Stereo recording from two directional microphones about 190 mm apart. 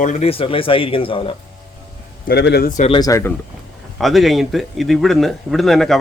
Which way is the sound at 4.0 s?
Centre (ahead or behind).